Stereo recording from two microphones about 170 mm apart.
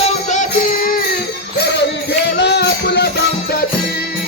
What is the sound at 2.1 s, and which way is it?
Music, 85° left.